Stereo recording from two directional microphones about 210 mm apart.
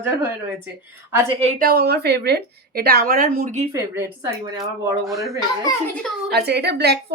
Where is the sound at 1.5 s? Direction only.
45° right (ahead or behind).